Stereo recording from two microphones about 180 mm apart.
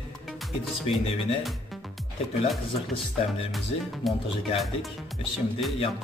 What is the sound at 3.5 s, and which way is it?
Speech, centre (ahead or behind).